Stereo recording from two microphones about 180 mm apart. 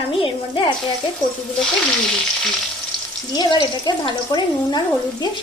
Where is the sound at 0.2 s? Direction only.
30° left (ahead or behind).